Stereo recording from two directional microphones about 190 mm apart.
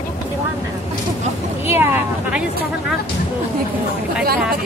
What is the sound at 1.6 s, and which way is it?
Vehicle, 10° right (ahead or behind).